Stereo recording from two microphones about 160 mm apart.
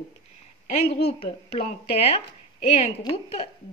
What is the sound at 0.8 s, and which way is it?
Speech, 90° left.